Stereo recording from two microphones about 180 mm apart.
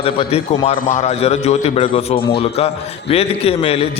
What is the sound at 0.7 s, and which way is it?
A man's voice, 40° left (ahead or behind).